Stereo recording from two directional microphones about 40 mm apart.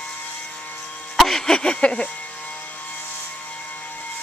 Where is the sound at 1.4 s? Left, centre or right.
Left.